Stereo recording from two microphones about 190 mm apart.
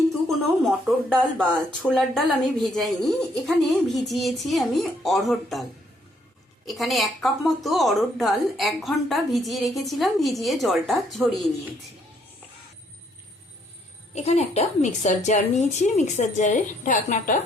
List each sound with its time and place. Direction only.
0.1 s speech: centre (ahead or behind)
6.7 s speech: centre (ahead or behind)
14.2 s a woman's voice: 35° left (ahead or behind)